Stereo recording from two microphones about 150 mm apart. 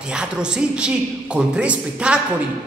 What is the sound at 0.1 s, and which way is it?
A man's voice, 5° right (ahead or behind).